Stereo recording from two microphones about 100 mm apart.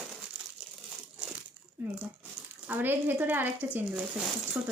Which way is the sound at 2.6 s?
20° right (ahead or behind).